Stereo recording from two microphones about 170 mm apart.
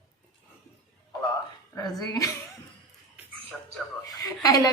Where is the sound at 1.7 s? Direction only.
20° left (ahead or behind).